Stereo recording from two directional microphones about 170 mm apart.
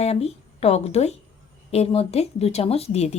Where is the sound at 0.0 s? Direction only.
35° left (ahead or behind).